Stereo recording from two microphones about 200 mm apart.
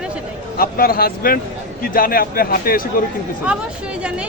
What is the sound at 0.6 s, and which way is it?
A man's voice, 45° left (ahead or behind).